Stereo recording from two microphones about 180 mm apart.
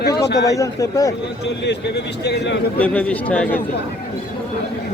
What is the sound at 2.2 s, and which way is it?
Speech, 70° left (ahead or behind).